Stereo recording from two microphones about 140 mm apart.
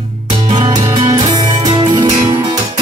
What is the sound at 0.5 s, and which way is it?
Music, 35° right (ahead or behind).